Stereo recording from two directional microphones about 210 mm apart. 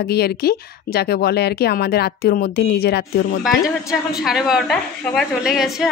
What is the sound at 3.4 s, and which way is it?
A woman's voice, centre (ahead or behind).